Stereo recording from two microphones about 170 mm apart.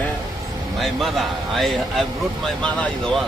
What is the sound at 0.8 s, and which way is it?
A man's voice, centre (ahead or behind).